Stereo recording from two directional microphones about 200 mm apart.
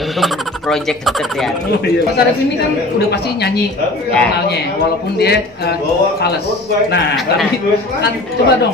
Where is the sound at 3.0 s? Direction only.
55° left (ahead or behind).